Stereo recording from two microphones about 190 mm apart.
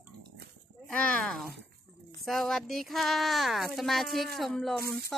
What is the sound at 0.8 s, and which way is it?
A woman's voice, 5° left (ahead or behind).